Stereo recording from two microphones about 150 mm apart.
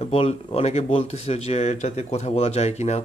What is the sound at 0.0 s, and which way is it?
Speech, 40° left (ahead or behind).